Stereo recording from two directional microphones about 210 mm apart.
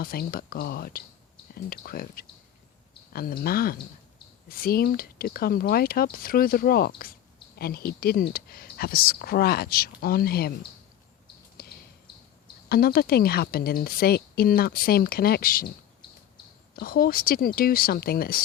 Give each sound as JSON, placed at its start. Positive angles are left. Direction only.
{"t": 0.0, "sound": "a woman's voice", "side_deg": 45}
{"t": 11.6, "sound": "a sound", "side_deg": 45}
{"t": 12.6, "sound": "a woman's voice", "side_deg": 45}
{"t": 16.7, "sound": "a woman's voice", "side_deg": 45}